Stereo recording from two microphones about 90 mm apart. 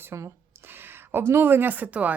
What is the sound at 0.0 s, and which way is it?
Speech, 30° right (ahead or behind).